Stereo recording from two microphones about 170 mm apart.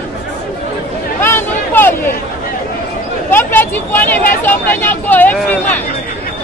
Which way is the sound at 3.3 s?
10° left (ahead or behind).